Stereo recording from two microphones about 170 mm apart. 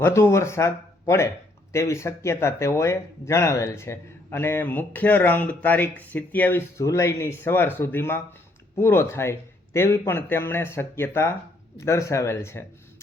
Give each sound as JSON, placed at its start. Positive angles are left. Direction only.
{"t": 0.0, "sound": "speech", "side_deg": 15}